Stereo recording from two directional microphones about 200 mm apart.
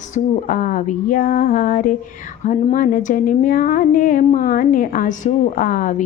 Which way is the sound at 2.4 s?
40° left (ahead or behind).